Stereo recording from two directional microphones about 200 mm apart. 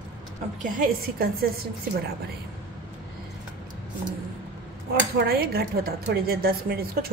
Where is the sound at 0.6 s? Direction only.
40° right (ahead or behind).